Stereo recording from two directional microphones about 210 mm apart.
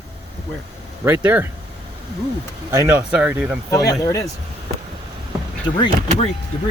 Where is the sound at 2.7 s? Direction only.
10° right (ahead or behind).